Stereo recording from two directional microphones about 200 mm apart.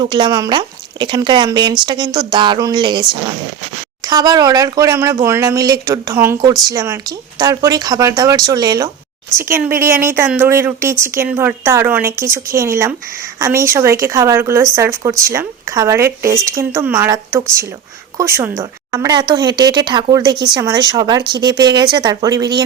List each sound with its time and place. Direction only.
0.0 s a woman's voice: 25° right (ahead or behind)